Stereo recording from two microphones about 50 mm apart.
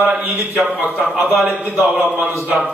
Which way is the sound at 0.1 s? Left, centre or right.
Right.